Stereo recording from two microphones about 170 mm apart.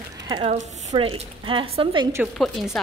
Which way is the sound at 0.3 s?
35° right (ahead or behind).